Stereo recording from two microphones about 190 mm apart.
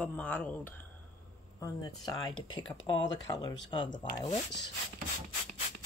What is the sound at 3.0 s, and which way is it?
Speech, 70° left (ahead or behind).